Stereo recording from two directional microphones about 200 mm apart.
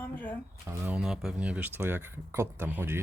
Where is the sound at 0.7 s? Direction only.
5° right (ahead or behind).